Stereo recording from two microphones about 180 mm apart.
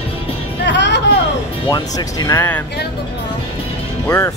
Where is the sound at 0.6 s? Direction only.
75° left (ahead or behind).